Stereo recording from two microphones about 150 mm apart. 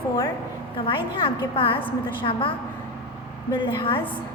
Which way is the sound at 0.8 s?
35° left (ahead or behind).